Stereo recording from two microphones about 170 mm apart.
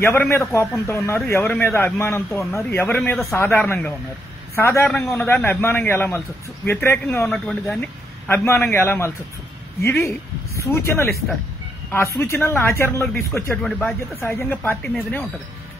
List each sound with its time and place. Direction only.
0.0 s a man's voice: 15° left (ahead or behind)
3.3 s a man's voice: 15° left (ahead or behind)
4.8 s a man's voice: centre (ahead or behind)
7.2 s a man's voice: centre (ahead or behind)
13.6 s a man's voice: centre (ahead or behind)